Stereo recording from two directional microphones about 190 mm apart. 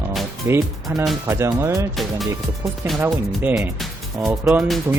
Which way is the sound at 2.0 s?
Centre (ahead or behind).